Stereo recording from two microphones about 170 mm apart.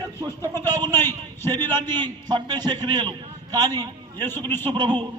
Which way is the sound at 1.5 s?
25° right (ahead or behind).